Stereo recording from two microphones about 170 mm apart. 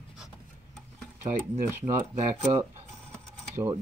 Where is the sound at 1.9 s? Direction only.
40° right (ahead or behind).